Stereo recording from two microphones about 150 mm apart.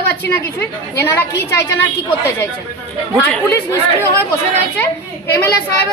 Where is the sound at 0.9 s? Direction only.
15° left (ahead or behind).